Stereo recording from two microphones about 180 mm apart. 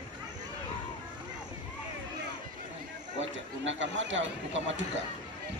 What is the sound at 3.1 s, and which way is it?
Horse, 90° right.